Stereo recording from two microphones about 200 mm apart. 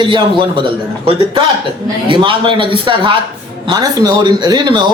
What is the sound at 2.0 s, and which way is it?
Speech, 25° right (ahead or behind).